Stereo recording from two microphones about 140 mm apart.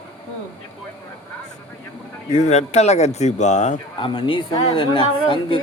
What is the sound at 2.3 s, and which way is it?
Speech, 55° left (ahead or behind).